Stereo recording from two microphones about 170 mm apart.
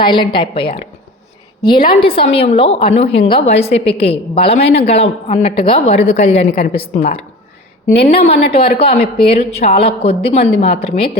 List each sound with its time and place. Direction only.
0.0 s a woman's voice: 30° left (ahead or behind)